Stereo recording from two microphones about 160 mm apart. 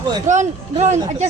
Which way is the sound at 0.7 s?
45° right (ahead or behind).